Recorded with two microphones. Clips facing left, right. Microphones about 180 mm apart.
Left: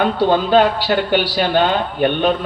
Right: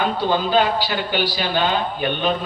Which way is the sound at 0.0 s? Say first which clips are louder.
Left 5 dB; 65° left (ahead or behind).